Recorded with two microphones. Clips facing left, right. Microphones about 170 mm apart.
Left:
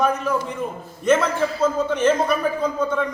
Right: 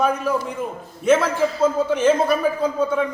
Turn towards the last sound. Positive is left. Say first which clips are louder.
# right 2 dB
turn(degrees=-10)  # may be behind; listen again after turning